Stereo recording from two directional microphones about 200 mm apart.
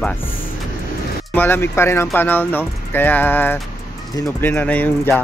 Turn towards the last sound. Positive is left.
turn(degrees=10)  # may be behind; listen again after turning